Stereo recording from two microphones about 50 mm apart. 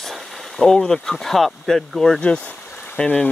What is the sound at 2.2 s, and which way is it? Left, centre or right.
Speech, left.